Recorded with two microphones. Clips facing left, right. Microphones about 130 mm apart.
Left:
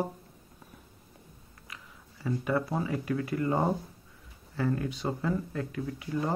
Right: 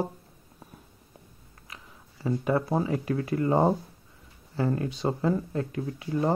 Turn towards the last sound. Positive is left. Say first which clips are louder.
# right 5 dB
turn(degrees=-30)  # may be behind; listen again after turning